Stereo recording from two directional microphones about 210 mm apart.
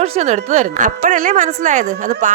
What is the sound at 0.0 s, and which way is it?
A woman's voice, 30° right (ahead or behind).